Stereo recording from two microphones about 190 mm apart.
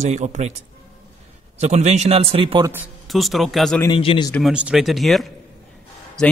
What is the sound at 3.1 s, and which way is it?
Speech, centre (ahead or behind).